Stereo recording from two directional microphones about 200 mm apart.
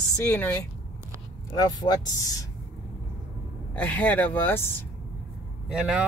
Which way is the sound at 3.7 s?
5° left (ahead or behind).